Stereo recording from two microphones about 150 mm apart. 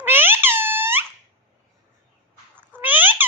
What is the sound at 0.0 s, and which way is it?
Squeak, 15° right (ahead or behind).